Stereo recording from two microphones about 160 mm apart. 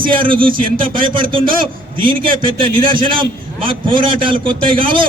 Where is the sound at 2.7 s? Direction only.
35° right (ahead or behind).